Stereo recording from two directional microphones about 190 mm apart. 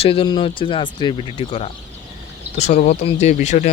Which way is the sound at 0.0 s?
30° left (ahead or behind).